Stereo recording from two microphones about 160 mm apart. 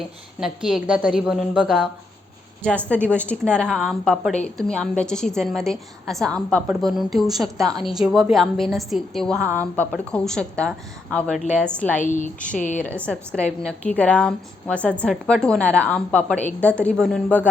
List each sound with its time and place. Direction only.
0.3 s a woman's voice: 5° right (ahead or behind)
2.6 s a woman's voice: 10° left (ahead or behind)
12.5 s a woman's voice: 50° left (ahead or behind)
12.8 s a woman's voice: 10° left (ahead or behind)